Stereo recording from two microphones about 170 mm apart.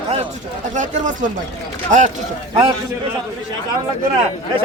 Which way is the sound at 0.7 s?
45° right (ahead or behind).